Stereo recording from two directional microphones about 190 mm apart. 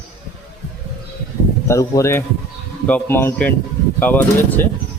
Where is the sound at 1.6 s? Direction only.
15° left (ahead or behind).